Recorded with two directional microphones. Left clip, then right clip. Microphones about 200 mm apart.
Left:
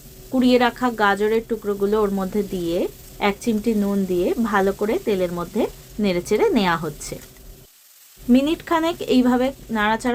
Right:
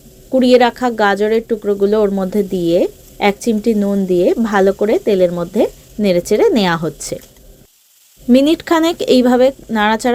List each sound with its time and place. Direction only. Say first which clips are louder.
0.3 s speech: right 7 dB; 20° right (ahead or behind)
8.3 s speech: right 7 dB; 30° right (ahead or behind)